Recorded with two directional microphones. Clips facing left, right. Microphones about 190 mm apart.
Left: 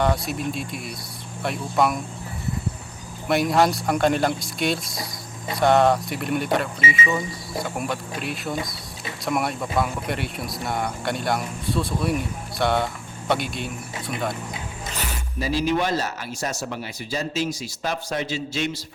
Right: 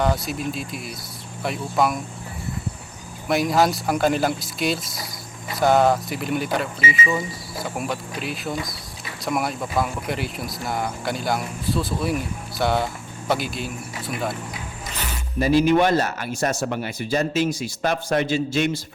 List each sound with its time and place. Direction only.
0.0 s speech: centre (ahead or behind)
3.2 s speech: centre (ahead or behind)
15.4 s speech: 55° right (ahead or behind)